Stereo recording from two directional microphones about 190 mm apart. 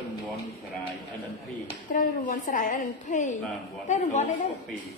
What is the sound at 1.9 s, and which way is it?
A woman's voice, 45° left (ahead or behind).